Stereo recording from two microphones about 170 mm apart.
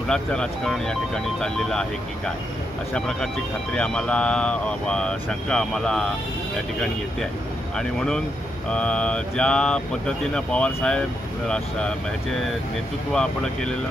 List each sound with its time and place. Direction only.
0.1 s speech: 5° left (ahead or behind)
7.7 s speech: 5° left (ahead or behind)
13.1 s speech: 5° left (ahead or behind)